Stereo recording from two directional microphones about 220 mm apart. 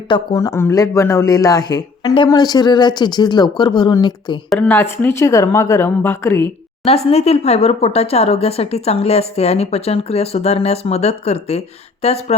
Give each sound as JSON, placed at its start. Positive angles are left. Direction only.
{"t": 0.1, "sound": "speech", "side_deg": 15}
{"t": 4.4, "sound": "speech", "side_deg": 5}
{"t": 6.8, "sound": "speech", "side_deg": 25}